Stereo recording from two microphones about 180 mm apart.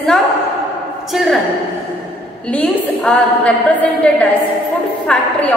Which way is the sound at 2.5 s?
5° left (ahead or behind).